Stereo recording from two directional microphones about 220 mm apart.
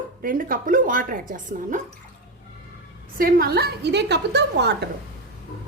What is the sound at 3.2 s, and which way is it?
A woman's voice, 40° right (ahead or behind).